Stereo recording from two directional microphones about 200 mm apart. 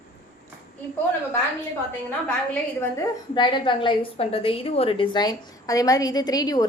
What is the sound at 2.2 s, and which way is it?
A woman's voice, 10° left (ahead or behind).